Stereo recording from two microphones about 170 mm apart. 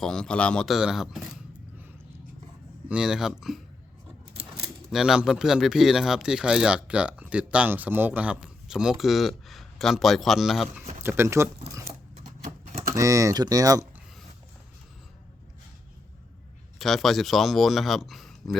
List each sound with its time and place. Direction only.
0.0 s speech: 5° left (ahead or behind)
2.9 s speech: 5° right (ahead or behind)
4.9 s speech: centre (ahead or behind)
11.0 s speech: 15° right (ahead or behind)
13.0 s speech: 20° right (ahead or behind)
16.7 s speech: centre (ahead or behind)